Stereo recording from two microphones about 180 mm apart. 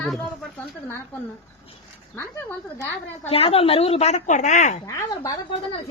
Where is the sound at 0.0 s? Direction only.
5° left (ahead or behind).